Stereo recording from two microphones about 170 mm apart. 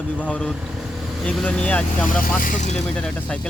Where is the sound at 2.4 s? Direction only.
50° left (ahead or behind).